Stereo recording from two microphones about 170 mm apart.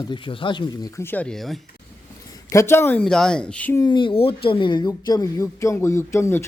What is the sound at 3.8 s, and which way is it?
A woman's voice, 25° left (ahead or behind).